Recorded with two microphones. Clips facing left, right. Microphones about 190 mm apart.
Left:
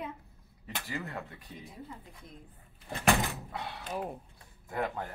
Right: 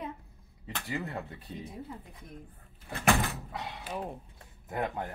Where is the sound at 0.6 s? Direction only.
20° right (ahead or behind).